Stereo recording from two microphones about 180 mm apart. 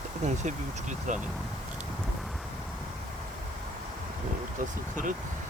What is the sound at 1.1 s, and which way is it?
Speech, 40° right (ahead or behind).